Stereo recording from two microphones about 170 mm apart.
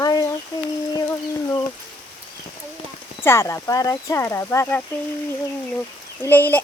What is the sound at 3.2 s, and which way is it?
Speech, 15° left (ahead or behind).